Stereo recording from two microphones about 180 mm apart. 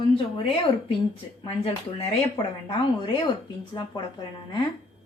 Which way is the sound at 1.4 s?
30° left (ahead or behind).